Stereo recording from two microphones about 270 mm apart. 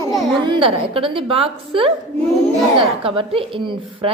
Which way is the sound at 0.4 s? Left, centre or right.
Centre.